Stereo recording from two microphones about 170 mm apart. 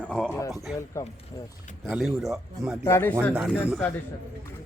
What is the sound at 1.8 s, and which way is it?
Speech, 5° right (ahead or behind).